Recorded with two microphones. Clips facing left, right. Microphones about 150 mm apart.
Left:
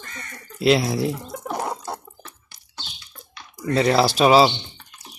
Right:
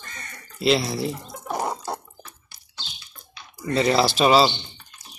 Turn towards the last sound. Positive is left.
turn(degrees=60)  # may be behind; listen again after turning